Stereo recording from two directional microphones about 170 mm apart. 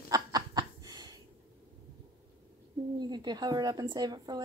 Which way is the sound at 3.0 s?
25° right (ahead or behind).